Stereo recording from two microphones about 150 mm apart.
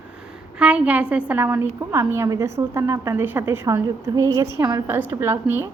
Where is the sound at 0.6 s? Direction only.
10° right (ahead or behind).